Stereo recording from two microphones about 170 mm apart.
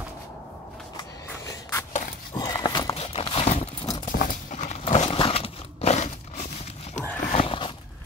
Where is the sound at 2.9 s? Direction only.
35° left (ahead or behind).